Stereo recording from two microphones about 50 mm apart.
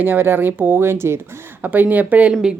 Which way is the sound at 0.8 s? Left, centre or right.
Right.